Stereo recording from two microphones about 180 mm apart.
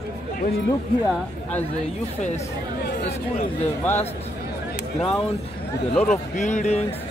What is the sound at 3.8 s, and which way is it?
Speech, 10° left (ahead or behind).